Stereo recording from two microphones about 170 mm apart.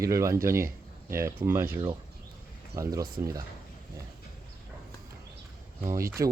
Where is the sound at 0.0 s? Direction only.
20° right (ahead or behind).